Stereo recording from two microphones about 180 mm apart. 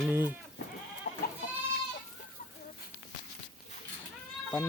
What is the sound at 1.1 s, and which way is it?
Goat, 55° left (ahead or behind).